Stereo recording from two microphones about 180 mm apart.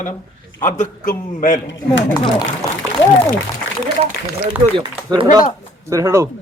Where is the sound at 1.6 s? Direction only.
90° left.